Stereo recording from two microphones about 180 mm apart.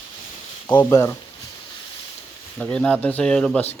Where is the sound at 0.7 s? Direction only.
15° left (ahead or behind).